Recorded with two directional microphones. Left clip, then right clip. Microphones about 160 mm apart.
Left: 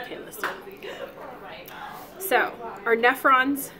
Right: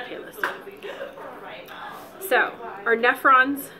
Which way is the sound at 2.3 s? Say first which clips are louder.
Right 2 dB; 50° left (ahead or behind).